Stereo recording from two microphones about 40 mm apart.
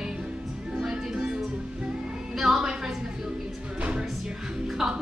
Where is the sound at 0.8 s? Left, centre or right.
Centre.